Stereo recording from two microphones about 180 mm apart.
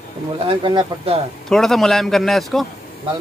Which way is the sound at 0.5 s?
25° right (ahead or behind).